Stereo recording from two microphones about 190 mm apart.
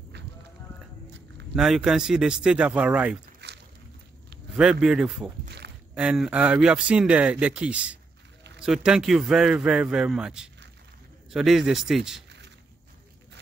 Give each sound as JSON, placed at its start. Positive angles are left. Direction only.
{"t": 1.5, "sound": "speech", "side_deg": -5}
{"t": 3.4, "sound": "a sound", "side_deg": -60}
{"t": 4.6, "sound": "speech", "side_deg": -5}